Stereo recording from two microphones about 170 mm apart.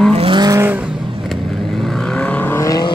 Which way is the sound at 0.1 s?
30° right (ahead or behind).